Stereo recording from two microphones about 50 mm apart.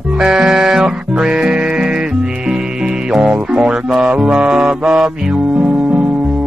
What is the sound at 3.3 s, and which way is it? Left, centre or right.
Music, centre.